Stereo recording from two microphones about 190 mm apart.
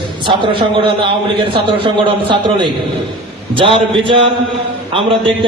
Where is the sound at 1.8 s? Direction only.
25° right (ahead or behind).